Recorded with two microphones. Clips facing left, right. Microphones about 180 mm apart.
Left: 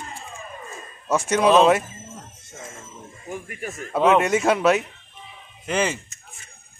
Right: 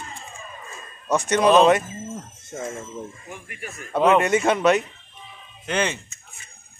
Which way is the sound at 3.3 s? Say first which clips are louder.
Left 5 dB; 40° left (ahead or behind).